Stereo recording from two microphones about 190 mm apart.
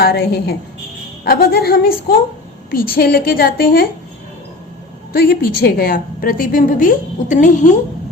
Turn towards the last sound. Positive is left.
turn(degrees=40)  # may be behind; listen again after turning